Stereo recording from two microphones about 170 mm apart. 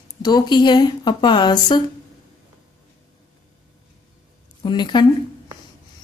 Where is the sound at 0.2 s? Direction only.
25° left (ahead or behind).